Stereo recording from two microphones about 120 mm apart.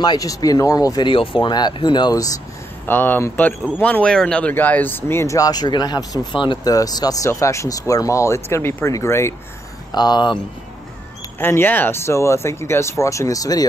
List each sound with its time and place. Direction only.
0.0 s speech: 35° left (ahead or behind)
1.1 s speech: 45° left (ahead or behind)
2.9 s speech: 15° left (ahead or behind)
9.9 s speech: 35° left (ahead or behind)
11.3 s speech: 20° left (ahead or behind)